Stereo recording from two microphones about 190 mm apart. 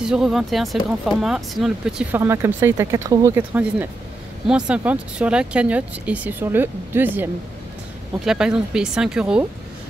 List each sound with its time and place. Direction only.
0.0 s speech: 5° right (ahead or behind)
8.3 s speech: 5° right (ahead or behind)